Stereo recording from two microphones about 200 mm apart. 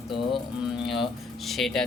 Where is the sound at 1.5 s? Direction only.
Centre (ahead or behind).